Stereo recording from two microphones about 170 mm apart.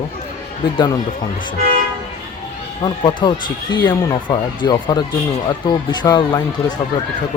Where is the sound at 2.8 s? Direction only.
25° left (ahead or behind).